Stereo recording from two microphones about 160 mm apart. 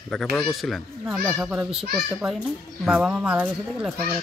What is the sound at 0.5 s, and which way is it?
Speech, centre (ahead or behind).